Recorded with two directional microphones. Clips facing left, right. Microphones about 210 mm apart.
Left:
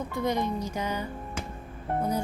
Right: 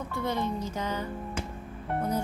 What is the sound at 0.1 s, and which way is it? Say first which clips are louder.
Speech: left 2 dB; 15° left (ahead or behind).